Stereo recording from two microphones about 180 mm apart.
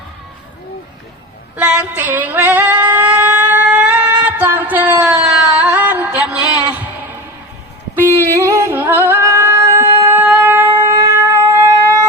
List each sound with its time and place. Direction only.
1.5 s female singing: 5° right (ahead or behind)
5.2 s music: 5° right (ahead or behind)
6.4 s a sound: 20° left (ahead or behind)
8.4 s music: 15° right (ahead or behind)
10.2 s shofar: 10° right (ahead or behind)